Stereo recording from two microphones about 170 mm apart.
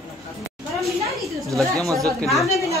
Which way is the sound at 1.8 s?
20° right (ahead or behind).